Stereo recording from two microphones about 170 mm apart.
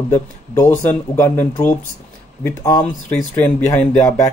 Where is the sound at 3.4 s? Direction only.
10° left (ahead or behind).